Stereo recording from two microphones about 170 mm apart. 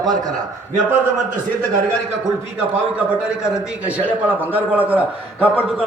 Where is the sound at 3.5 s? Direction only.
10° right (ahead or behind).